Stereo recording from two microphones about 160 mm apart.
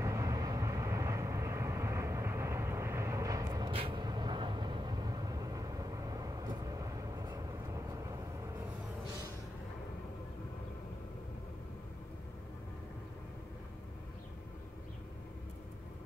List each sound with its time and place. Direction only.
0.0 s vehicle: 20° right (ahead or behind)